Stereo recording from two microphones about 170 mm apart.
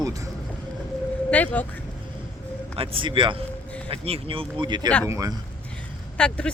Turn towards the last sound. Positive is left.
turn(degrees=5)  # may be behind; listen again after turning